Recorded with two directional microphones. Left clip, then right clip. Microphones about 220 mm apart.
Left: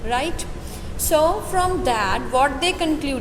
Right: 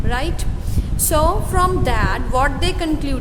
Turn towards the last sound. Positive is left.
turn(degrees=-15)  # may be behind; listen again after turning